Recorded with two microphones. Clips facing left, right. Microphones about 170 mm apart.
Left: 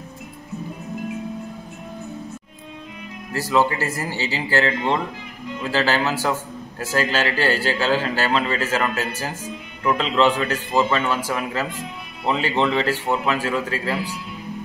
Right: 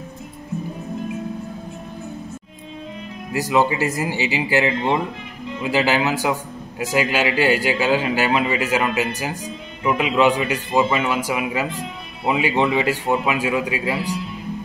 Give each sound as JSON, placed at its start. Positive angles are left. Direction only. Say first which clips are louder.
{"t": 3.3, "sound": "a man's voice", "louder": "right 1 dB", "side_deg": -15}